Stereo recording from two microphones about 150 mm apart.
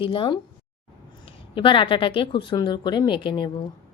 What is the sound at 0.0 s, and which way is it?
Speech, 35° left (ahead or behind).